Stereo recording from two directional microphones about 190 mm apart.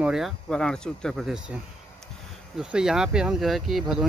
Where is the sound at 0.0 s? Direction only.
Centre (ahead or behind).